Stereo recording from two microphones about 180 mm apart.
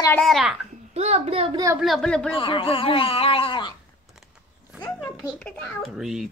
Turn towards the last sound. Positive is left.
turn(degrees=0)  # may be behind; listen again after turning